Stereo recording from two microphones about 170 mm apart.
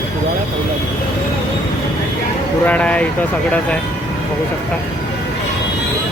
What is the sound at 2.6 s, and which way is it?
Speech, 10° left (ahead or behind).